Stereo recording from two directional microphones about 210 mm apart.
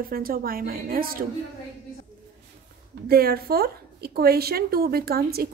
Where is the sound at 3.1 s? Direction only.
45° right (ahead or behind).